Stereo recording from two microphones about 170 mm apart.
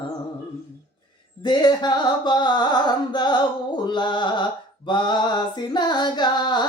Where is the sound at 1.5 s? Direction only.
25° left (ahead or behind).